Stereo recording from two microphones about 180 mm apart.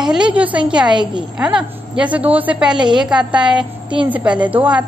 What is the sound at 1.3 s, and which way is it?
A woman's voice, 5° right (ahead or behind).